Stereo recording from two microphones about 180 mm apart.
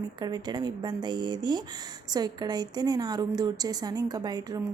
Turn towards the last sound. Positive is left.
turn(degrees=-20)  # may be behind; listen again after turning